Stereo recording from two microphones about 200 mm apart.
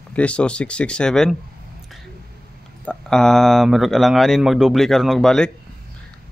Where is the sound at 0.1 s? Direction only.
5° left (ahead or behind).